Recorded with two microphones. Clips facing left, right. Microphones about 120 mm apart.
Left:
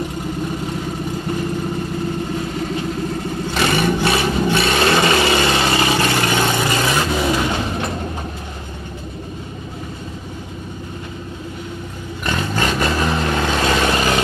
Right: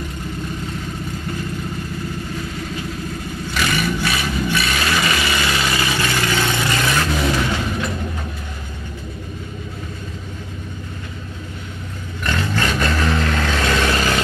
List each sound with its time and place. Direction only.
3.5 s vehicle: 30° left (ahead or behind)
4.0 s a sound: 25° left (ahead or behind)
4.3 s vehicle: 30° left (ahead or behind)
12.3 s vehicle: 20° left (ahead or behind)